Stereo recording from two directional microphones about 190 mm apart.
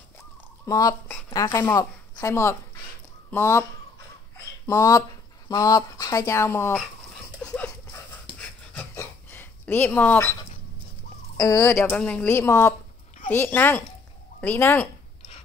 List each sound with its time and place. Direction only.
0.7 s a woman's voice: 20° left (ahead or behind)
4.6 s a woman's voice: 15° left (ahead or behind)
7.4 s dog: 5° left (ahead or behind)
11.3 s a woman's voice: 15° left (ahead or behind)